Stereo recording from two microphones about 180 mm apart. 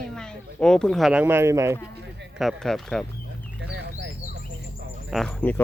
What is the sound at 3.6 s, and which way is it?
Bird, 75° right (ahead or behind).